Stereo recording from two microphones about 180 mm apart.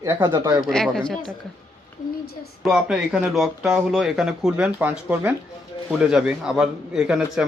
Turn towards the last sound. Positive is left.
turn(degrees=-5)  # may be behind; listen again after turning